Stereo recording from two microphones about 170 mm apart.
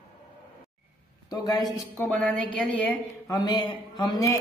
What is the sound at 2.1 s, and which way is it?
Bell, 5° left (ahead or behind).